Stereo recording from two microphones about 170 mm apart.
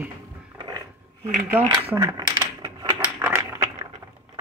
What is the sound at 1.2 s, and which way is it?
Speech, 50° right (ahead or behind).